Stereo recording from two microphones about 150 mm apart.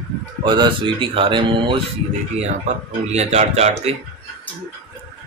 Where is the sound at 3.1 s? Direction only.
45° right (ahead or behind).